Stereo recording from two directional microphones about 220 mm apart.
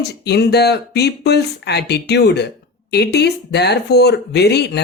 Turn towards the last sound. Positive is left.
turn(degrees=50)  # may be behind; listen again after turning